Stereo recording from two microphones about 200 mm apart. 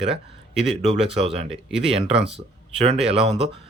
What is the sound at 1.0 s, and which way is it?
A man's voice, 30° right (ahead or behind).